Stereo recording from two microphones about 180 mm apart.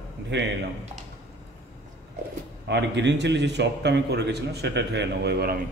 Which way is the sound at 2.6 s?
75° right (ahead or behind).